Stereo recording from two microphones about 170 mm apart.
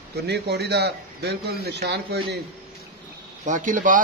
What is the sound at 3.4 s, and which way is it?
Speech, 45° right (ahead or behind).